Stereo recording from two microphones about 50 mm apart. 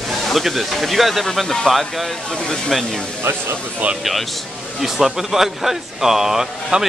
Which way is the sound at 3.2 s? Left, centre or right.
Right.